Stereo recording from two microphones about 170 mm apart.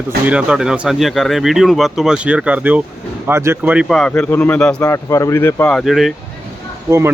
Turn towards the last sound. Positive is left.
turn(degrees=-15)  # may be behind; listen again after turning